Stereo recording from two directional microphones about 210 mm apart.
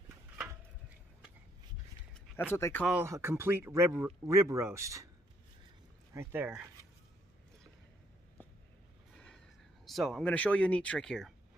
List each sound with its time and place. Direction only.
2.1 s a sound: 5° left (ahead or behind)
2.5 s speech: 10° left (ahead or behind)
2.8 s speech: 5° right (ahead or behind)
6.1 s speech: 10° right (ahead or behind)
9.1 s a sound: 5° left (ahead or behind)
9.8 s speech: centre (ahead or behind)